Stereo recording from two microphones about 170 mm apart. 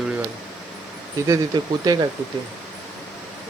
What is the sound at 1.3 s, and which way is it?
Speech, 25° right (ahead or behind).